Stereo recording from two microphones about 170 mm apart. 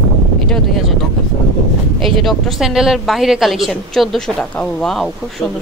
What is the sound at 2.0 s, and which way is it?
Speech, centre (ahead or behind).